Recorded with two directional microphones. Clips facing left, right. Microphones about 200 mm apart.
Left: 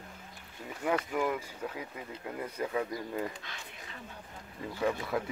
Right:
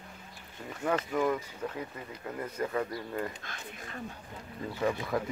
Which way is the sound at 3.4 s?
50° right (ahead or behind).